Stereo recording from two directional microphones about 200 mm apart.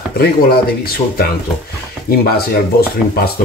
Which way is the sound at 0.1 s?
50° left (ahead or behind).